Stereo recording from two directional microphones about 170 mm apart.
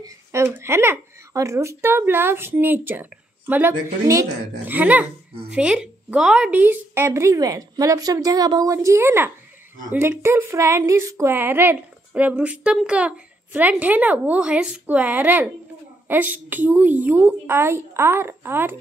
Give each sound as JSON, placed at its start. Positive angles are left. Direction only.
{"t": 0.0, "sound": "speech", "side_deg": -15}